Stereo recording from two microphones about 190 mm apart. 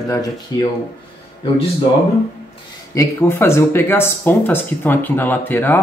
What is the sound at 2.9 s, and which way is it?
Speech, 15° left (ahead or behind).